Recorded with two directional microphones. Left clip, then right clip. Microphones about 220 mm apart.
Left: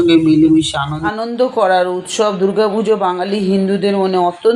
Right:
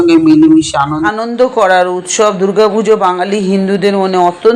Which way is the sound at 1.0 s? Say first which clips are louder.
Right 5 dB; 20° right (ahead or behind).